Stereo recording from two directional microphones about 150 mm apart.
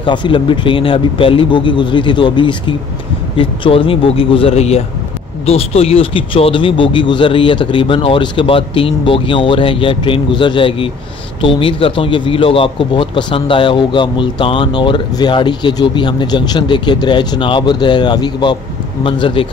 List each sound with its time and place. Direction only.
0.0 s speech: 30° left (ahead or behind)